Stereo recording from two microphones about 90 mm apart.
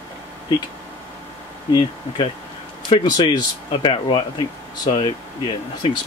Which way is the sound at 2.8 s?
55° left (ahead or behind).